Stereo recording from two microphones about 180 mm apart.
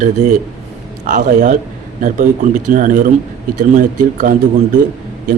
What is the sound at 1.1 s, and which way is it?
Speech, 45° right (ahead or behind).